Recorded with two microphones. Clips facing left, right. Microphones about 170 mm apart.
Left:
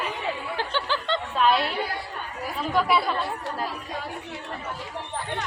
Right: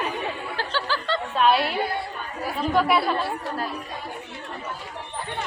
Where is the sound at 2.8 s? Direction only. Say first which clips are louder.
Right 2 dB; 5° right (ahead or behind).